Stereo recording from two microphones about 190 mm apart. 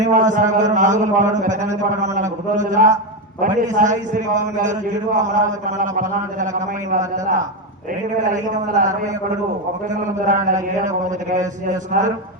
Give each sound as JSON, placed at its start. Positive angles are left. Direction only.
{"t": 0.0, "sound": "a man's voice", "side_deg": -40}
{"t": 10.2, "sound": "a man's voice", "side_deg": -40}